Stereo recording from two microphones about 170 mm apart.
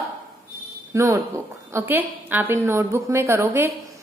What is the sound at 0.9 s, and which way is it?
A woman's voice, 15° right (ahead or behind).